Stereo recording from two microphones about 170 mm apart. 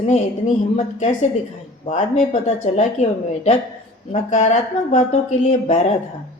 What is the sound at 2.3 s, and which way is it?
A woman's voice, 40° left (ahead or behind).